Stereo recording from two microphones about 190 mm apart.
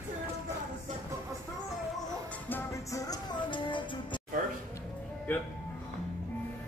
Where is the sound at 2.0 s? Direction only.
10° left (ahead or behind); by 4.2 s 25° left (ahead or behind).